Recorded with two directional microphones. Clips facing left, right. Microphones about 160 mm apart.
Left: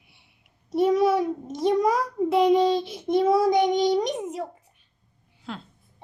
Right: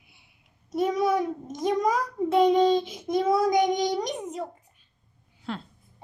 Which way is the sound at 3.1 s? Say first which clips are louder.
Left 3 dB; 25° left (ahead or behind).